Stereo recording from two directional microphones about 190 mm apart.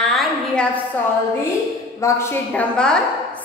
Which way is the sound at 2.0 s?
15° left (ahead or behind).